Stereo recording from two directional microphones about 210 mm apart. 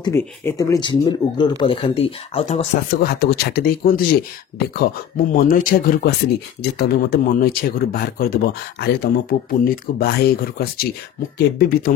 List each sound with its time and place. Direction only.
0.0 s speech: 10° left (ahead or behind); by 2.7 s 30° left (ahead or behind)
2.9 s speech: 45° left (ahead or behind)